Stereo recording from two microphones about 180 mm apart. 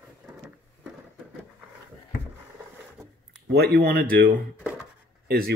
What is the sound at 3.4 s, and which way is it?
Speech, 60° right (ahead or behind).